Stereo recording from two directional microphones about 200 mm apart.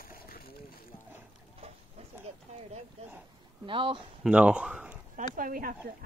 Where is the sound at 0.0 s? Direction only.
50° left (ahead or behind).